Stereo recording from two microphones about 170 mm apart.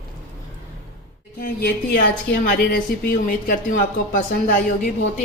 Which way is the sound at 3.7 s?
50° left (ahead or behind).